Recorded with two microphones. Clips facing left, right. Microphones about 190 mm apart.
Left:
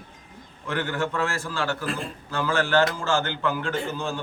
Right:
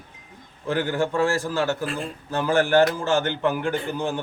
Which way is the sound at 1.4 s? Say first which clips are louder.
Right 4 dB; 20° right (ahead or behind).